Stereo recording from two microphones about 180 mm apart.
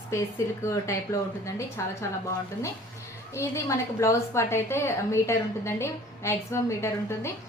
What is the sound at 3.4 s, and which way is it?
A woman's voice, 15° left (ahead or behind).